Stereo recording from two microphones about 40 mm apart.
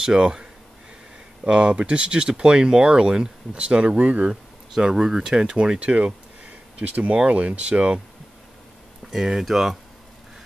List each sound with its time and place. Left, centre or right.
0.0 s speech: centre; by 4.3 s right
4.3 s speech: centre
9.1 s speech: centre